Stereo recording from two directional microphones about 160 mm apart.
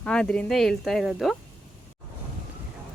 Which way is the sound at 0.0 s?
5° left (ahead or behind).